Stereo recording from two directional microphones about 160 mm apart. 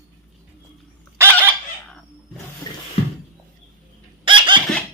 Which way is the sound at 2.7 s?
30° left (ahead or behind).